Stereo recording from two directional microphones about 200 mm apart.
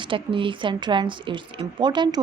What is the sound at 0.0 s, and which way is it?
Speech, 25° right (ahead or behind).